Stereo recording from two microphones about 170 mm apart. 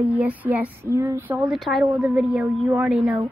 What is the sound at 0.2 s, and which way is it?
A woman's voice, 10° right (ahead or behind).